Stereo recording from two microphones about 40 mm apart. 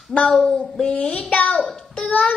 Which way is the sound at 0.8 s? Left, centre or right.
Left.